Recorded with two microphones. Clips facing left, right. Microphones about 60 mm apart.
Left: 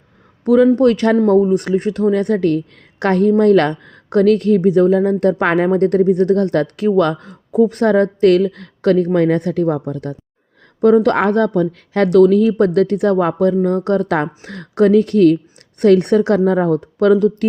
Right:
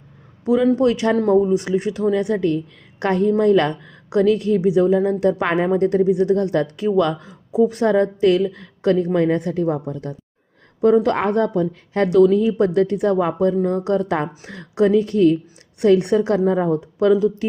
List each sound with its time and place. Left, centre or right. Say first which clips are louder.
0.4 s speech: left 5 dB; left